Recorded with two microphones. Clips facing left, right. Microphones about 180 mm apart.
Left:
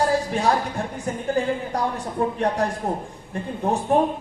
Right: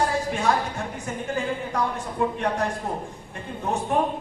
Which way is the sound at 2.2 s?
35° left (ahead or behind).